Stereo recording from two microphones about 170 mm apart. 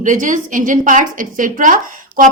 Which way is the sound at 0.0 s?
50° right (ahead or behind).